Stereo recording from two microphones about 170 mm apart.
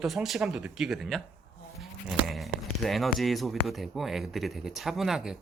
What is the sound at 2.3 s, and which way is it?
Speech, centre (ahead or behind).